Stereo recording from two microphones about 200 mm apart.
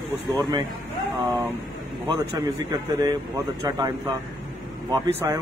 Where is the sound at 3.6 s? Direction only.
20° right (ahead or behind).